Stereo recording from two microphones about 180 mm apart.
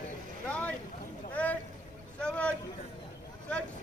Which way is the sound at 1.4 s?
10° left (ahead or behind).